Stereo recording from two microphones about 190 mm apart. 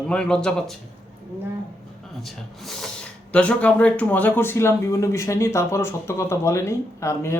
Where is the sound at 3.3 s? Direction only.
5° left (ahead or behind).